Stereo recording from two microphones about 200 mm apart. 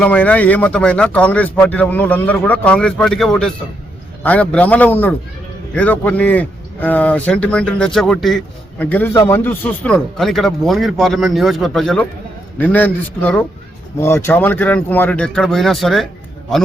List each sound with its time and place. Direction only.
0.0 s speech: 5° left (ahead or behind)